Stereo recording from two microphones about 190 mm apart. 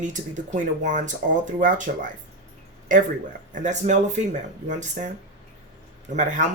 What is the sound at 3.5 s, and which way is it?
Speech, 40° right (ahead or behind).